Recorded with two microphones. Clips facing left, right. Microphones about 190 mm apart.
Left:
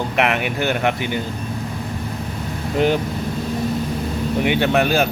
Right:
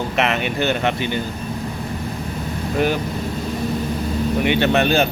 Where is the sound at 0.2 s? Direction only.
10° left (ahead or behind).